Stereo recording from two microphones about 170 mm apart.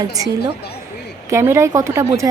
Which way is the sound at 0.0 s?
20° right (ahead or behind).